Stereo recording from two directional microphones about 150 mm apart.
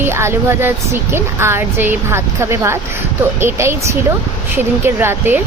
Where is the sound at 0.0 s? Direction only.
15° right (ahead or behind).